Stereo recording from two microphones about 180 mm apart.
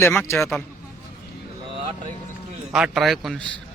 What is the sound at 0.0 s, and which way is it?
Speech, 15° left (ahead or behind).